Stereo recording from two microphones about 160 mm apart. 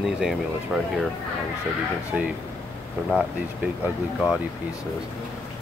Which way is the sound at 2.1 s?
5° right (ahead or behind).